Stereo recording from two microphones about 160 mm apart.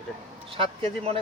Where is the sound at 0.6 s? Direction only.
35° right (ahead or behind).